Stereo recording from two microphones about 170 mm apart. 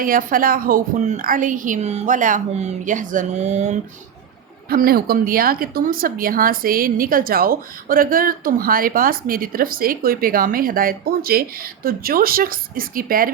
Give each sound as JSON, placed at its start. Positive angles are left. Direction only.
{"t": 0.0, "sound": "a woman's voice", "side_deg": -55}
{"t": 4.7, "sound": "speech", "side_deg": -60}